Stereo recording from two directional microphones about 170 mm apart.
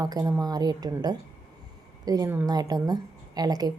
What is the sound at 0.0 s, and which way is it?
A woman's voice, 20° right (ahead or behind).